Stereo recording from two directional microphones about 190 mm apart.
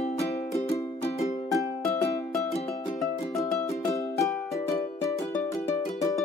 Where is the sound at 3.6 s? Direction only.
15° left (ahead or behind).